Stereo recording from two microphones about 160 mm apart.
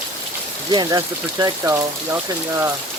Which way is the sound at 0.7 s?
25° right (ahead or behind).